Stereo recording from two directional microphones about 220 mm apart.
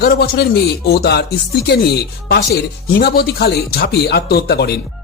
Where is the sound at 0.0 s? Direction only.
45° left (ahead or behind).